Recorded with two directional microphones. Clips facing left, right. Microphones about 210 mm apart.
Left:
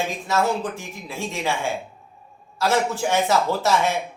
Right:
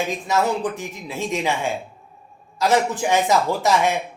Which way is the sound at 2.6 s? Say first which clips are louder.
Right 2 dB; 15° right (ahead or behind).